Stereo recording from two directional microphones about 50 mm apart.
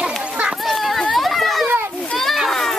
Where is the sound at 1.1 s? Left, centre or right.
Centre.